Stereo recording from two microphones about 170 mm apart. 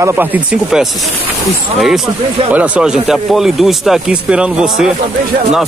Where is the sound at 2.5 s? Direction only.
10° right (ahead or behind).